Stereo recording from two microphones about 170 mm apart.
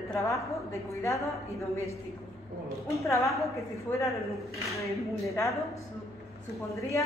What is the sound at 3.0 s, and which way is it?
Speech, 20° left (ahead or behind).